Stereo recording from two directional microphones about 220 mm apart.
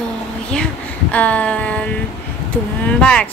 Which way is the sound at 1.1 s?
5° left (ahead or behind).